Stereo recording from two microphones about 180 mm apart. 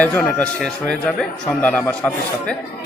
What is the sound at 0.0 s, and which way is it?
A man's voice, 10° left (ahead or behind).